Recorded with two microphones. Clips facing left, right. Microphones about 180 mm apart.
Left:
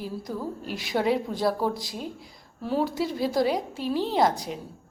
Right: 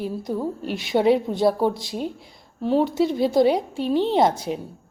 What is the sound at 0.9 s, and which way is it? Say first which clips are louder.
Speech: right 6 dB; 25° right (ahead or behind).